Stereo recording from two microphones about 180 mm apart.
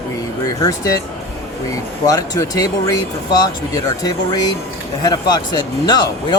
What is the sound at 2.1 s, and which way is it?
Speech, 20° left (ahead or behind).